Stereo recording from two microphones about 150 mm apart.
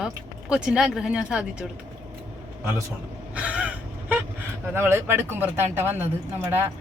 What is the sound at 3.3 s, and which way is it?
Crow, 10° right (ahead or behind).